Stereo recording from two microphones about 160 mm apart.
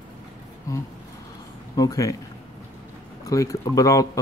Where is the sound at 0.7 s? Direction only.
20° left (ahead or behind).